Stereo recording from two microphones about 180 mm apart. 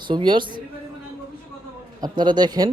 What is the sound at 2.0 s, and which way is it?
Speech, 25° right (ahead or behind).